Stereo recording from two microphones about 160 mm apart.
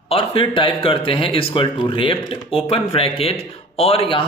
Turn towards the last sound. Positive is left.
turn(degrees=35)  # may be behind; listen again after turning